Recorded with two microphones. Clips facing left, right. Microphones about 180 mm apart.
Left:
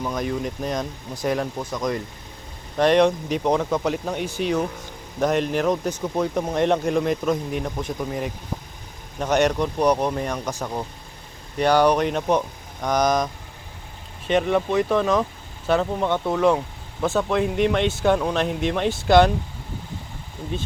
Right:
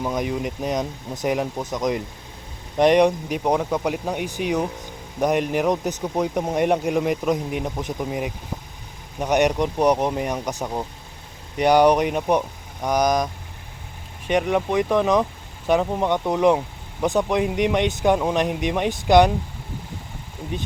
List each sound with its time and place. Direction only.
0.0 s speech: 15° right (ahead or behind)